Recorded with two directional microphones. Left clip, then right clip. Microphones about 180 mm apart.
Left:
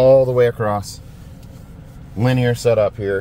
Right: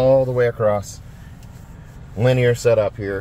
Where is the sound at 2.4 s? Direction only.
5° left (ahead or behind).